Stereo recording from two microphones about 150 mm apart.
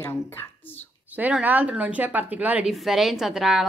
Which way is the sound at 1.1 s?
10° right (ahead or behind).